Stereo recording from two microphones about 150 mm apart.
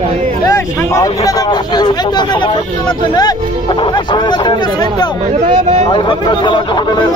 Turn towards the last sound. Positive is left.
turn(degrees=30)  # may be behind; listen again after turning